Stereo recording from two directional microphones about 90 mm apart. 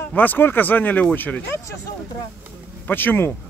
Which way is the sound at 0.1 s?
20° left (ahead or behind).